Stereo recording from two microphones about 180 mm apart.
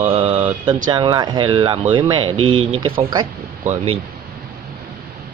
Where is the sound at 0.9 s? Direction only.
25° right (ahead or behind).